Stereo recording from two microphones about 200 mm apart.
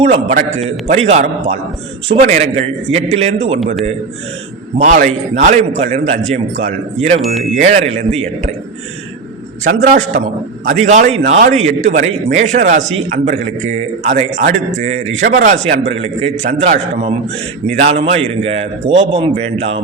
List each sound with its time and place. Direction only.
0.0 s a man's voice: 35° right (ahead or behind)
4.8 s a man's voice: 35° right (ahead or behind)
10.8 s a man's voice: 35° right (ahead or behind)